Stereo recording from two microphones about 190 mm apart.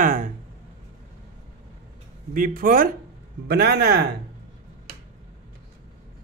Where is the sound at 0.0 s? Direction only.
45° right (ahead or behind).